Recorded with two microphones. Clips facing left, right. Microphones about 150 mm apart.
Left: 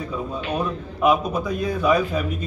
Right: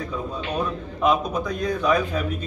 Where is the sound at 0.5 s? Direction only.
10° left (ahead or behind).